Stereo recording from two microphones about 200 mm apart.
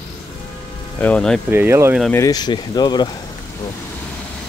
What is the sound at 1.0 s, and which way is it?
Speech, 5° left (ahead or behind).